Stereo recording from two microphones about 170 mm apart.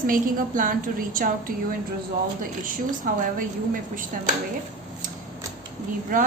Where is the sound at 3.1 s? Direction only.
55° right (ahead or behind).